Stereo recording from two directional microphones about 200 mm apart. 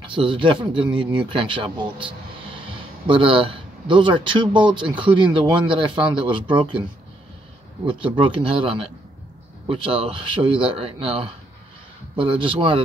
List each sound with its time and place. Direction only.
0.0 s speech: 25° right (ahead or behind)
7.8 s speech: 25° right (ahead or behind)